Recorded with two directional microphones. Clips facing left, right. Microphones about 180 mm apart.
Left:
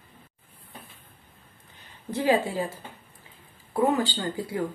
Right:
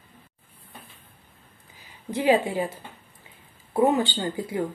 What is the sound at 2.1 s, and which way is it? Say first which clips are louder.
Speech: right 2 dB; 20° right (ahead or behind).